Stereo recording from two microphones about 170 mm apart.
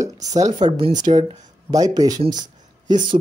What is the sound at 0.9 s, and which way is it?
Speech, 45° right (ahead or behind).